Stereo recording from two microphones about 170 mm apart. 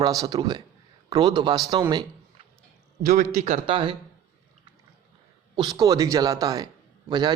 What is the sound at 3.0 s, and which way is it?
Speech, 55° right (ahead or behind).